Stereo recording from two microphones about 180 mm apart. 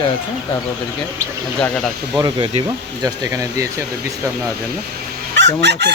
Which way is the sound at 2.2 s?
25° right (ahead or behind).